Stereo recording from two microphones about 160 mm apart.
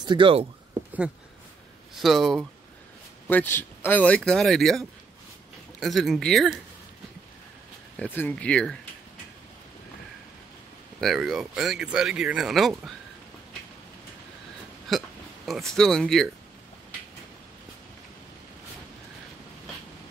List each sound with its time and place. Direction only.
0.0 s speech: 30° right (ahead or behind)
2.0 s speech: centre (ahead or behind)
3.3 s speech: 10° left (ahead or behind)
8.0 s speech: 10° left (ahead or behind)
11.0 s speech: centre (ahead or behind)
14.9 s speech: centre (ahead or behind)